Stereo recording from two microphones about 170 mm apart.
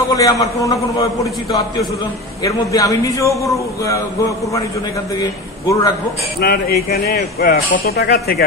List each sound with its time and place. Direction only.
0.1 s a man's voice: 20° left (ahead or behind)
2.4 s a man's voice: 20° left (ahead or behind)
5.2 s a man's voice: 20° left (ahead or behind)
6.4 s speech: 65° left (ahead or behind)